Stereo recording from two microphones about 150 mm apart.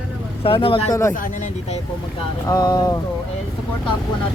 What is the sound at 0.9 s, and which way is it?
Speech, 20° left (ahead or behind).